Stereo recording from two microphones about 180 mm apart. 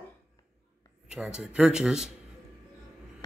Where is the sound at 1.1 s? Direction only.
5° right (ahead or behind).